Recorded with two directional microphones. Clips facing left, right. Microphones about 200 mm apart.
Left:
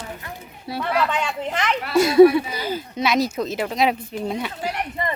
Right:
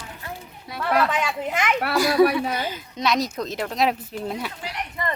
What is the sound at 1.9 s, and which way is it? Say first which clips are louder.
Speech: left 7 dB; 25° left (ahead or behind).